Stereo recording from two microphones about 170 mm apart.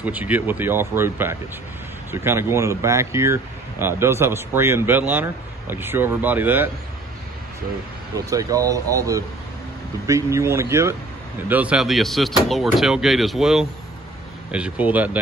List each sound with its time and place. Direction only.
0.0 s a man's voice: 10° right (ahead or behind)
8.3 s a man's voice: 20° right (ahead or behind)